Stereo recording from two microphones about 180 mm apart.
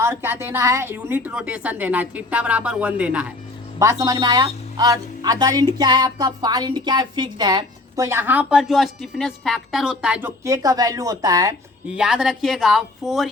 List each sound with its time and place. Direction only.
0.0 s a woman's voice: 15° right (ahead or behind)
3.8 s speech: 20° right (ahead or behind)
11.9 s speech: 5° right (ahead or behind)